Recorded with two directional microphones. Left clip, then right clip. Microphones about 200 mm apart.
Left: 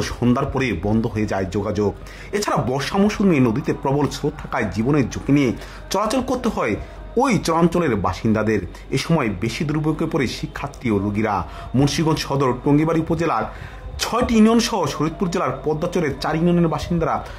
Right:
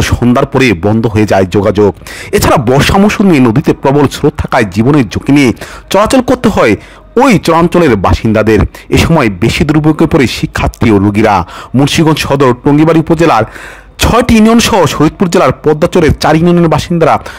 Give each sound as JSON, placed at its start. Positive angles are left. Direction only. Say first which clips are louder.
{"t": 0.3, "sound": "speech", "louder": "right 14 dB", "side_deg": -45}